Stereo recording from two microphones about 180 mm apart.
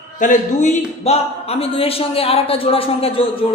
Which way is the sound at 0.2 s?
45° left (ahead or behind).